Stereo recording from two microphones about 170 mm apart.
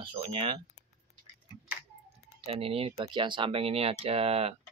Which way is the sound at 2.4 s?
35° right (ahead or behind).